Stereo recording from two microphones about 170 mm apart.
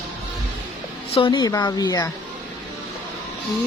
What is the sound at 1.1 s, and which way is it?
A woman's voice, 30° left (ahead or behind).